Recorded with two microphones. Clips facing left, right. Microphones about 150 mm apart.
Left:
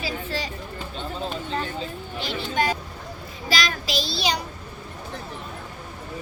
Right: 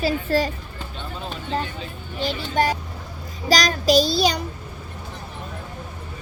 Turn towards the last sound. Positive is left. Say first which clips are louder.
# right 9 dB
turn(degrees=-45)  # may be behind; listen again after turning